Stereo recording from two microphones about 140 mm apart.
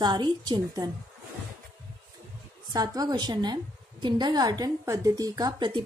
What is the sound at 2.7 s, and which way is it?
A woman's voice, 30° right (ahead or behind).